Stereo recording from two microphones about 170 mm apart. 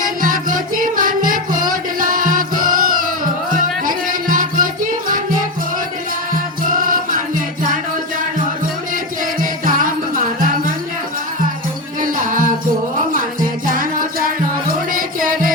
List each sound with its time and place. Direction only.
0.0 s music: 55° right (ahead or behind)
9.4 s music: 55° right (ahead or behind)
12.0 s music: 50° right (ahead or behind)
13.7 s music: 55° right (ahead or behind)